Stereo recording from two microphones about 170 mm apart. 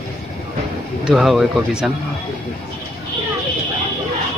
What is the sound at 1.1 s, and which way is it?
Speech, 5° right (ahead or behind).